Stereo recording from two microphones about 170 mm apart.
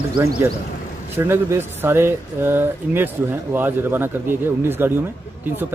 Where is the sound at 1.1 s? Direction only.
15° right (ahead or behind).